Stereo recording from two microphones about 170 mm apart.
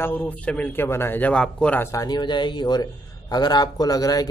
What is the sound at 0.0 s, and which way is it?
A man's voice, 10° left (ahead or behind).